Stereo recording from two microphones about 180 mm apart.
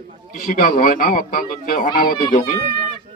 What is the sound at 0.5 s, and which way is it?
A man's voice, 50° left (ahead or behind).